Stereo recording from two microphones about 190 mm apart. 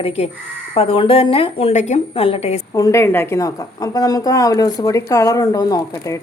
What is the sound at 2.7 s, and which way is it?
A woman's voice, 15° left (ahead or behind).